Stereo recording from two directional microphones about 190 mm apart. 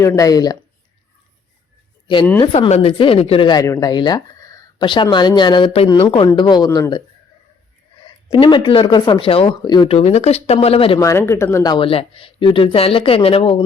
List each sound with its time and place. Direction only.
0.0 s speech: 15° left (ahead or behind)
2.4 s speech: 30° left (ahead or behind)
8.3 s speech: 25° left (ahead or behind)
11.0 s speech: 15° left (ahead or behind); by 13.7 s 30° left (ahead or behind)